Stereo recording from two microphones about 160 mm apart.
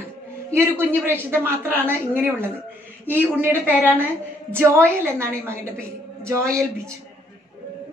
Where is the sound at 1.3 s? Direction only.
15° right (ahead or behind).